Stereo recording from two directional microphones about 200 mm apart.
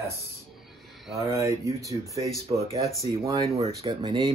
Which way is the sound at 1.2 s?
15° right (ahead or behind).